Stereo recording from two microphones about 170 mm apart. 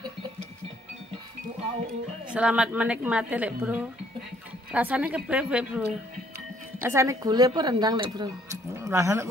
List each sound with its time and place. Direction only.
2.2 s a woman's voice: 5° right (ahead or behind)
6.8 s speech: 15° right (ahead or behind)